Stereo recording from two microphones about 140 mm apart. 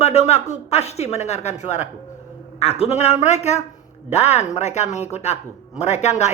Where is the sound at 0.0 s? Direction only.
50° left (ahead or behind).